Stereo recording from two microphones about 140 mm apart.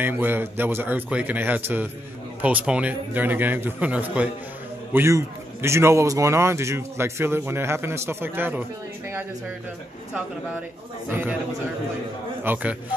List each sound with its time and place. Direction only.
0.0 s a man's voice: 15° right (ahead or behind)
11.1 s a man's voice: 15° right (ahead or behind)
12.5 s a man's voice: 15° right (ahead or behind)